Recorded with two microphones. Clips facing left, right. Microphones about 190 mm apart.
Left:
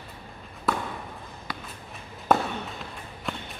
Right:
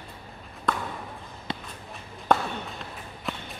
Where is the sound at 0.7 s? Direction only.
5° left (ahead or behind).